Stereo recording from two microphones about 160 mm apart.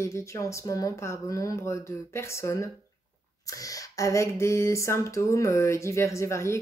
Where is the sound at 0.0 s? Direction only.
20° left (ahead or behind).